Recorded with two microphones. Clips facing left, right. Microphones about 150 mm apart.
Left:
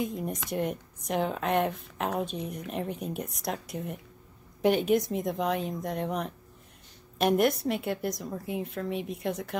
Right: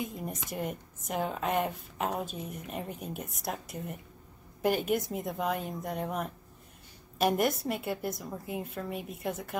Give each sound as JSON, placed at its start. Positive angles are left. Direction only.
{"t": 0.0, "sound": "a woman's voice", "side_deg": 0}